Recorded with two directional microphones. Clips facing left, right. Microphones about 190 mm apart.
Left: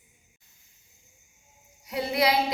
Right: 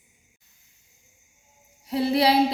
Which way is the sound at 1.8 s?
30° right (ahead or behind).